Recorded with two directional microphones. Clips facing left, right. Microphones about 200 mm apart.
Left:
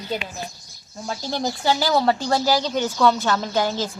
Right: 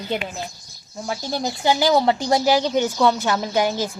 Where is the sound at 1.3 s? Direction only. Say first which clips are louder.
Right 1 dB; 15° right (ahead or behind).